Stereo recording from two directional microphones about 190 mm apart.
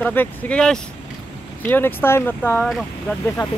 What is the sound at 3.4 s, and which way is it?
Speech, 25° left (ahead or behind).